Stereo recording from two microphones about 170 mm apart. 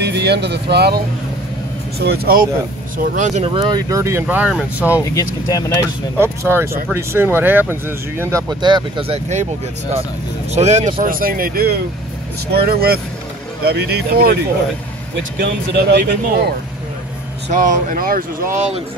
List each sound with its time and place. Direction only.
0.0 s speech: 80° right; by 2.4 s 65° right (ahead or behind)
3.2 s speech: 40° right (ahead or behind); by 5.0 s 10° right (ahead or behind)
5.0 s speech: 20° left (ahead or behind)
6.1 s speech: 15° right (ahead or behind); by 9.5 s 40° right (ahead or behind)
10.5 s speech: 40° right (ahead or behind)
11.0 s speech: 55° right (ahead or behind)
15.3 s speech: 65° right (ahead or behind)
17.5 s speech: 50° right (ahead or behind)